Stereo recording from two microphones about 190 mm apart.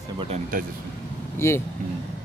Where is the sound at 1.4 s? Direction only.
15° left (ahead or behind).